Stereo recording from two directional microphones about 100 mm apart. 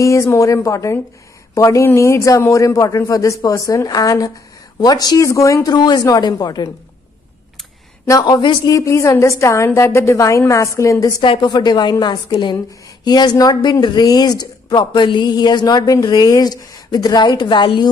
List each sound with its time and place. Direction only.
0.0 s a man's voice: 30° left (ahead or behind)
8.1 s speech: 45° left (ahead or behind)
8.7 s a man's voice: 30° left (ahead or behind)
11.3 s speech: 45° left (ahead or behind)